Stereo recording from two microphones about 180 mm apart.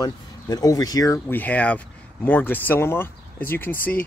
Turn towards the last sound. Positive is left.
turn(degrees=10)  # may be behind; listen again after turning